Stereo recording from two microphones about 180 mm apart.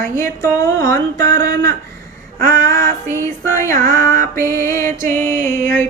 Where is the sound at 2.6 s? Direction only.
15° left (ahead or behind).